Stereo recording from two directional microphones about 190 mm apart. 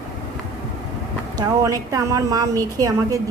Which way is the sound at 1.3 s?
15° right (ahead or behind).